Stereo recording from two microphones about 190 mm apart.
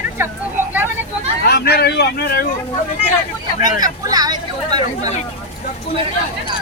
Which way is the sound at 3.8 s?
20° right (ahead or behind).